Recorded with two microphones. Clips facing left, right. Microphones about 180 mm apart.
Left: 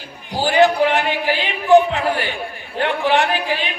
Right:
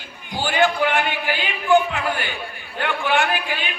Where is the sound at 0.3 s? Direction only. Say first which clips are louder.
Left 5 dB; 35° left (ahead or behind).